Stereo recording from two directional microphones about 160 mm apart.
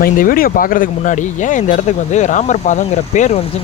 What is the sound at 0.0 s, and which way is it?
Speech, 60° left (ahead or behind).